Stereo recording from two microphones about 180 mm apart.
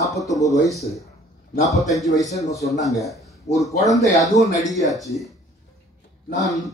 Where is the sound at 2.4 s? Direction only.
20° left (ahead or behind).